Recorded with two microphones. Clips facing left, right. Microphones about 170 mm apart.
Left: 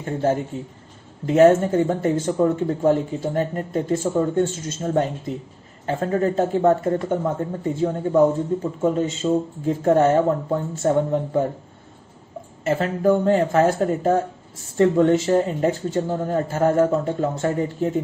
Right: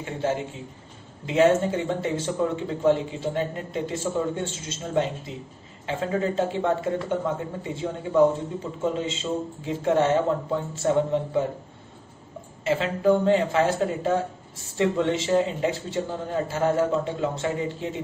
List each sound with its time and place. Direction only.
0.0 s a man's voice: 45° left (ahead or behind)
12.6 s a man's voice: 45° left (ahead or behind)